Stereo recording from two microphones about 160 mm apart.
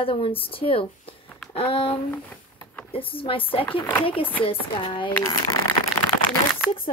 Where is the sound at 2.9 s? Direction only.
35° left (ahead or behind).